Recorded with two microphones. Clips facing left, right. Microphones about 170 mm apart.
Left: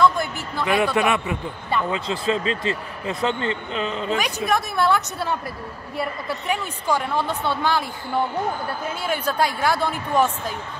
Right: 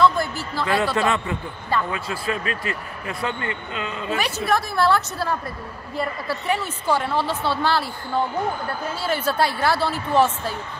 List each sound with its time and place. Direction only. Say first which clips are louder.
0.7 s a man's voice: left 2 dB; 15° left (ahead or behind)
7.0 s a woman's voice: right 1 dB; 5° right (ahead or behind)
7.2 s speech: right 1 dB; 20° left (ahead or behind)
9.0 s a woman's voice: right 1 dB; 5° right (ahead or behind)
9.7 s a man's voice: right 1 dB; 15° left (ahead or behind)